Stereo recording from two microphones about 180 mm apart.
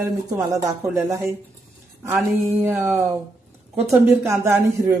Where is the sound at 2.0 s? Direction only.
10° right (ahead or behind).